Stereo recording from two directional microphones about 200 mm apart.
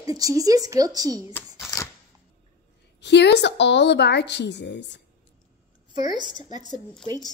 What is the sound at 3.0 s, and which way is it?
A woman's voice, 60° left (ahead or behind).